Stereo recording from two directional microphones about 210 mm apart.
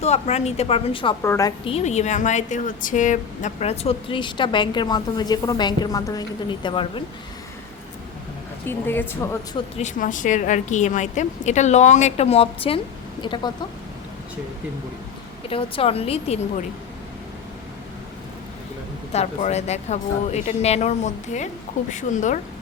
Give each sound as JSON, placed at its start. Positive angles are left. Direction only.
{"t": 0.0, "sound": "a woman's voice", "side_deg": 30}
{"t": 1.2, "sound": "a woman's voice", "side_deg": 15}
{"t": 8.6, "sound": "a woman's voice", "side_deg": 10}
{"t": 9.7, "sound": "a woman's voice", "side_deg": 35}
{"t": 15.4, "sound": "a woman's voice", "side_deg": 25}
{"t": 19.1, "sound": "a woman's voice", "side_deg": 30}